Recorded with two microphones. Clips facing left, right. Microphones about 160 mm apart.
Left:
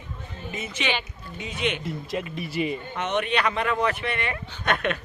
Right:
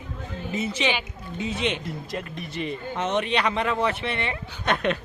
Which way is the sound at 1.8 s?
Centre (ahead or behind).